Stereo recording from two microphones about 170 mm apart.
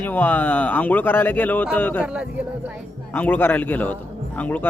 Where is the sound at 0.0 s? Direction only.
10° left (ahead or behind).